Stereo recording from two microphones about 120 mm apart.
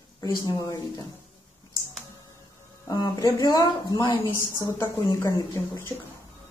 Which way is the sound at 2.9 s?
35° left (ahead or behind).